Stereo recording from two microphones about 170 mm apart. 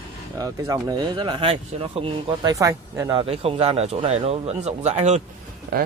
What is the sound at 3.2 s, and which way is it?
Speech, 35° right (ahead or behind).